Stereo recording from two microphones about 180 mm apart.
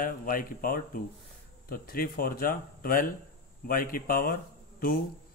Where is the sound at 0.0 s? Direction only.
50° left (ahead or behind).